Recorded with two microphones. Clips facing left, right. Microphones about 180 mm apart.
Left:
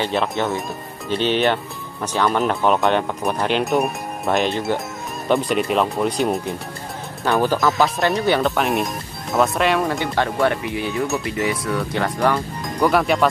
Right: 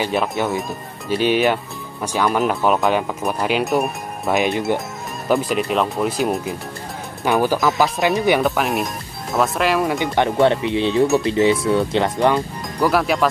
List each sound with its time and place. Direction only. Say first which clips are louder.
0.0 s speech: right 1 dB; 10° right (ahead or behind)
5.3 s speech: even; centre (ahead or behind)
9.8 s speech: right 3 dB; 15° right (ahead or behind)
12.7 s speech: even; centre (ahead or behind)